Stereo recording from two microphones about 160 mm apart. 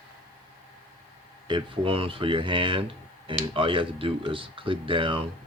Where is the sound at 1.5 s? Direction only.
35° right (ahead or behind).